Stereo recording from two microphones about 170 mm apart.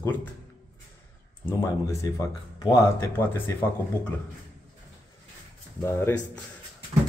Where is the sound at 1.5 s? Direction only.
15° left (ahead or behind).